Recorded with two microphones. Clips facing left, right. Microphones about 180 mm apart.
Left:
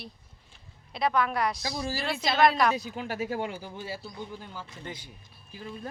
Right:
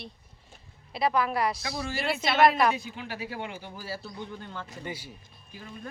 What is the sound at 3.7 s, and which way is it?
Speech, 25° left (ahead or behind).